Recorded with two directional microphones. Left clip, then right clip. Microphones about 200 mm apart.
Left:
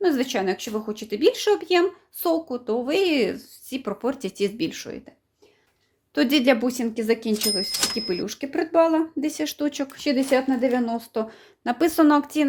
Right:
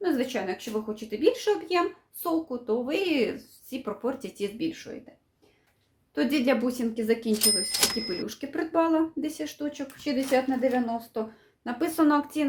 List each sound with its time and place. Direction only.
0.0 s speech: 50° left (ahead or behind)
6.1 s speech: 40° left (ahead or behind)
7.7 s speech: centre (ahead or behind)
8.0 s speech: 35° left (ahead or behind)